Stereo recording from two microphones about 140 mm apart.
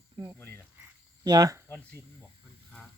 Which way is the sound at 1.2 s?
30° right (ahead or behind).